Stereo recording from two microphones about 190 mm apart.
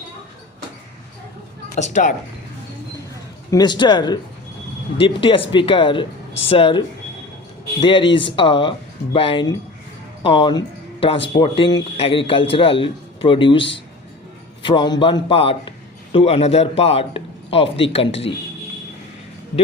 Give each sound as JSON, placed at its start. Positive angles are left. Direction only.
{"t": 1.7, "sound": "speech", "side_deg": 40}
{"t": 3.5, "sound": "a man's voice", "side_deg": 25}